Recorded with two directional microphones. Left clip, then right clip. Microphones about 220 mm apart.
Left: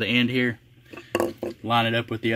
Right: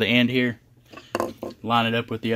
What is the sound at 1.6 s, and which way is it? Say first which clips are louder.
Speech: right 1 dB; 25° right (ahead or behind).